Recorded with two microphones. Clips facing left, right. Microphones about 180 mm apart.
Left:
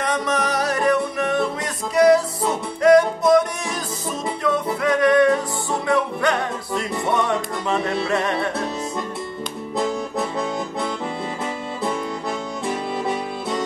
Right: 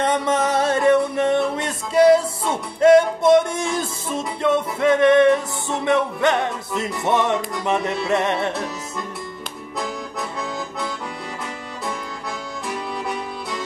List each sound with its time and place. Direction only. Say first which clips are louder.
0.0 s music: right 3 dB; 25° right (ahead or behind)
12.6 s music: left 3 dB; 25° left (ahead or behind)